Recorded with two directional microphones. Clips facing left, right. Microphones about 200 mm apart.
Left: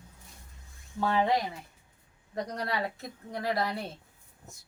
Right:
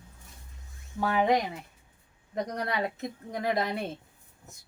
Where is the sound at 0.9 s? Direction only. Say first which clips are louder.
Right 2 dB; 20° right (ahead or behind).